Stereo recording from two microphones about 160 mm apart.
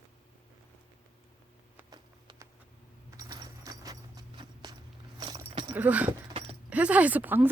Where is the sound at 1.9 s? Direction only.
25° right (ahead or behind).